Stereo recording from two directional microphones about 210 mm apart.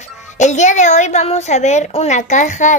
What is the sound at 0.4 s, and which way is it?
A woman's voice, 35° left (ahead or behind).